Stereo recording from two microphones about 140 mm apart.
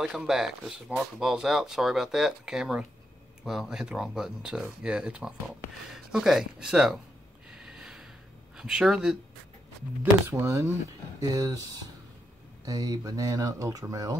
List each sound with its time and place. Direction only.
0.0 s speech: 5° right (ahead or behind)
7.5 s snort: 5° right (ahead or behind)
8.5 s speech: 5° right (ahead or behind)
10.2 s speech: 20° right (ahead or behind)
12.6 s speech: 30° right (ahead or behind)